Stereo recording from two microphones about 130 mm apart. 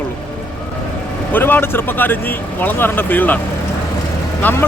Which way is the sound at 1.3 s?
15° left (ahead or behind).